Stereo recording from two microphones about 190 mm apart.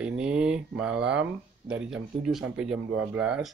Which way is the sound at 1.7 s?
5° right (ahead or behind).